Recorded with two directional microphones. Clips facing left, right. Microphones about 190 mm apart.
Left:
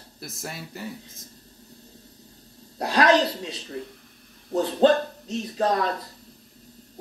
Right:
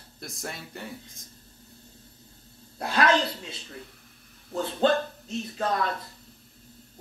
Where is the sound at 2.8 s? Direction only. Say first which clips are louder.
Left 4 dB; 40° left (ahead or behind).